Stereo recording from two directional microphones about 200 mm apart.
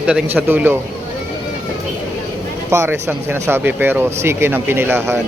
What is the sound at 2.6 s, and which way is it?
Speech, 10° right (ahead or behind).